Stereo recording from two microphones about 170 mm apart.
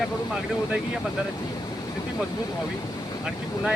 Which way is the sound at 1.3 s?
25° left (ahead or behind).